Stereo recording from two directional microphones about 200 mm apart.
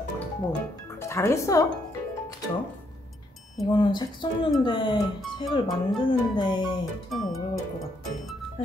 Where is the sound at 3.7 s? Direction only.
25° left (ahead or behind).